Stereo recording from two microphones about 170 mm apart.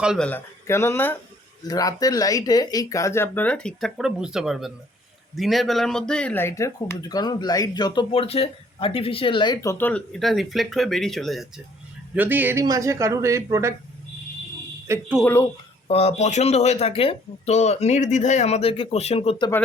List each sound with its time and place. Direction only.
0.0 s speech: 5° right (ahead or behind)
0.3 s speech: 15° left (ahead or behind)
12.1 s speech: 10° right (ahead or behind)
15.2 s speech: 15° left (ahead or behind)
15.9 s speech: 35° left (ahead or behind)